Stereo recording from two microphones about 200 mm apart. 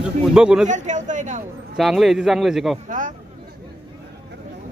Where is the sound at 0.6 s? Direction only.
40° right (ahead or behind).